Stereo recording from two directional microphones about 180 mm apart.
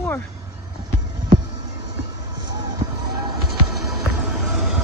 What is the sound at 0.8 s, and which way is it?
Music, 25° right (ahead or behind).